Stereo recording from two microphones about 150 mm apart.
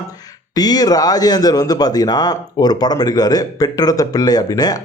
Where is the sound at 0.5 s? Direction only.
25° left (ahead or behind).